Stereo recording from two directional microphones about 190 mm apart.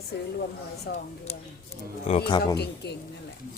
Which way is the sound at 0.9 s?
55° left (ahead or behind).